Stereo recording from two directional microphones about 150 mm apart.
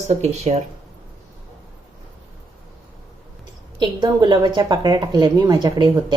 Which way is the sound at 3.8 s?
30° right (ahead or behind).